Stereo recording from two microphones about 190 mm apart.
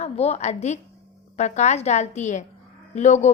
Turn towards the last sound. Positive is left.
turn(degrees=40)  # may be behind; listen again after turning